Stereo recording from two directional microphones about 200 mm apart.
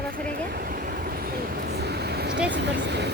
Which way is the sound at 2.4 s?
60° right (ahead or behind).